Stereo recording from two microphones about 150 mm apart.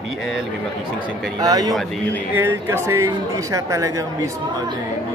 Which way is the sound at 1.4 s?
25° right (ahead or behind).